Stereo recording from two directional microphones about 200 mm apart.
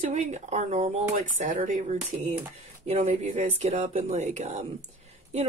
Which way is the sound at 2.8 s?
35° right (ahead or behind).